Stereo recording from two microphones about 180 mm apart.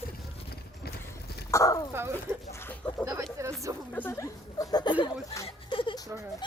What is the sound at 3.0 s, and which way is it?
Speech, 15° right (ahead or behind).